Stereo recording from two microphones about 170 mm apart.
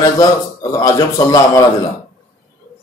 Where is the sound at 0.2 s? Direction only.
20° left (ahead or behind).